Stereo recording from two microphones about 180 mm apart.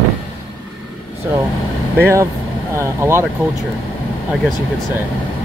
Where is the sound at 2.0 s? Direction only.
15° right (ahead or behind).